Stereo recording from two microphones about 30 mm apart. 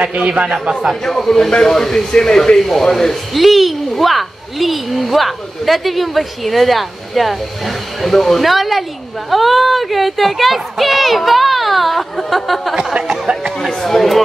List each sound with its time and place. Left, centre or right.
0.0 s a man's voice: right
1.0 s speech: centre
2.6 s speech: centre
3.3 s speech: centre
12.7 s a sound: right
13.7 s a sound: centre